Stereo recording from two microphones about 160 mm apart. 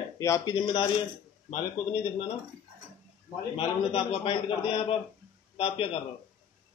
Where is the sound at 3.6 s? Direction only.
35° left (ahead or behind).